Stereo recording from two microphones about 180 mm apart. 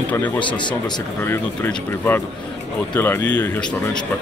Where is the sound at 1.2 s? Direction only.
10° left (ahead or behind).